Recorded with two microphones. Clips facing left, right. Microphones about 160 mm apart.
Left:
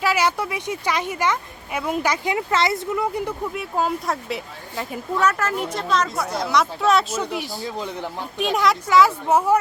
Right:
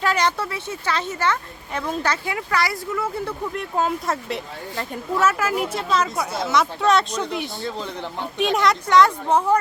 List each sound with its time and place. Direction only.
0.0 s speech: 5° left (ahead or behind)
3.5 s a woman's voice: 5° left (ahead or behind)
8.4 s a woman's voice: centre (ahead or behind)